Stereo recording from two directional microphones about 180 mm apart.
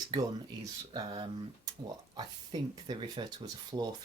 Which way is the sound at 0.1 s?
20° right (ahead or behind).